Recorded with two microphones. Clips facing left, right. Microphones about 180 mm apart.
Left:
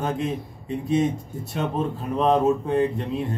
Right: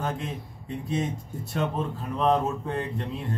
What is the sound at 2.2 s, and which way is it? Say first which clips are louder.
Speech: left 5 dB; 15° left (ahead or behind).